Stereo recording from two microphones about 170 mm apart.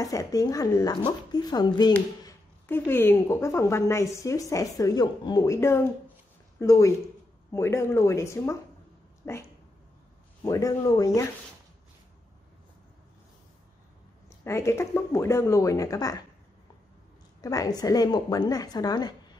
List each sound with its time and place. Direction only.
0.0 s speech: 20° left (ahead or behind)
2.2 s a woman's voice: 10° left (ahead or behind)
10.4 s speech: 20° left (ahead or behind)
14.4 s a woman's voice: 15° left (ahead or behind)
17.4 s a woman's voice: 20° left (ahead or behind)